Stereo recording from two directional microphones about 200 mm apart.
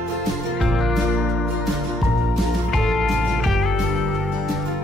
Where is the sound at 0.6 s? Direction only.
Centre (ahead or behind).